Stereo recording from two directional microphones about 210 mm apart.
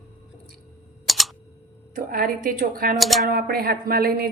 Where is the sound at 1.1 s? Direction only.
Centre (ahead or behind).